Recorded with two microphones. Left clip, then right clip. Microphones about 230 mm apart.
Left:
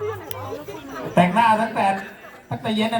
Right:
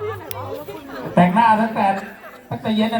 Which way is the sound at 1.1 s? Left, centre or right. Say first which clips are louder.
Right 2 dB; left.